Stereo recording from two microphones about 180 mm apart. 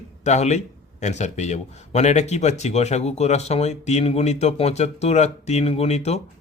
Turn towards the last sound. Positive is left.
turn(degrees=35)  # may be behind; listen again after turning